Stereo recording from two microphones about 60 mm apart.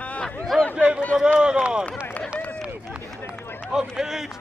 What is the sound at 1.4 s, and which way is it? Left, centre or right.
Run, centre.